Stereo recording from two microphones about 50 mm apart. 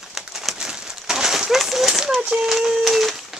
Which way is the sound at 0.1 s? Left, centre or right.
Centre.